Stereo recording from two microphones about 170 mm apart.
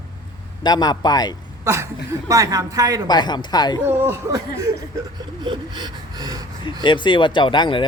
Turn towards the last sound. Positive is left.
turn(degrees=30)  # may be behind; listen again after turning